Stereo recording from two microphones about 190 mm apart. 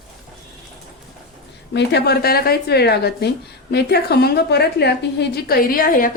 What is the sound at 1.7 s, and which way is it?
A woman's voice, 60° left (ahead or behind).